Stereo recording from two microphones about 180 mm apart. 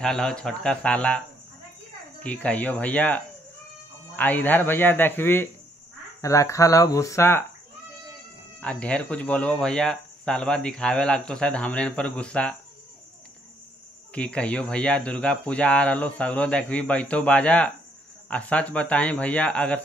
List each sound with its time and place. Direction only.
0.0 s speech: 5° left (ahead or behind)
2.2 s speech: 5° left (ahead or behind)
8.5 s speech: 5° left (ahead or behind)
14.1 s speech: 5° left (ahead or behind)